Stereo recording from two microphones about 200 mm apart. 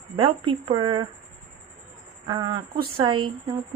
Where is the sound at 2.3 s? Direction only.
20° right (ahead or behind).